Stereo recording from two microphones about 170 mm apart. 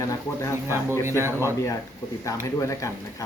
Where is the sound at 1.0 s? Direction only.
15° right (ahead or behind).